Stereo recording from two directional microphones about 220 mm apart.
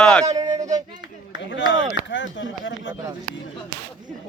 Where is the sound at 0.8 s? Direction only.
20° right (ahead or behind).